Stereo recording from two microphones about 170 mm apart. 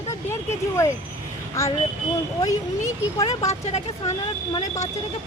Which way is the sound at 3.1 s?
20° left (ahead or behind).